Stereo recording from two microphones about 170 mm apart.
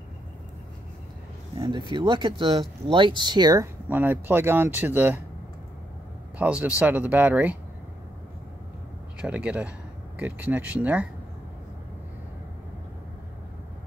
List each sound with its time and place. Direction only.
1.6 s speech: 30° right (ahead or behind)
3.9 s speech: 10° right (ahead or behind)
6.3 s speech: 10° right (ahead or behind)
9.2 s speech: 10° right (ahead or behind)